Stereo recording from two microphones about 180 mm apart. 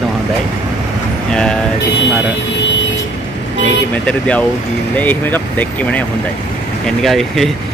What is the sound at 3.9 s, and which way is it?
Speech, 5° left (ahead or behind).